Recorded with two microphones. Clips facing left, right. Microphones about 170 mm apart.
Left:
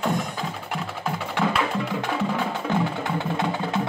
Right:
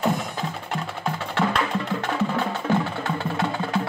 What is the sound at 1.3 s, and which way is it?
Music, 10° left (ahead or behind).